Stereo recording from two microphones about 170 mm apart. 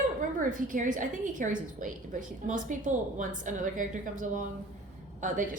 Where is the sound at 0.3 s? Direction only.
50° right (ahead or behind).